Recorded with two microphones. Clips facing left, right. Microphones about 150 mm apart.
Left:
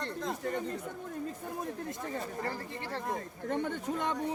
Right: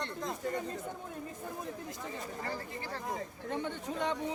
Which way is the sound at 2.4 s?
35° left (ahead or behind).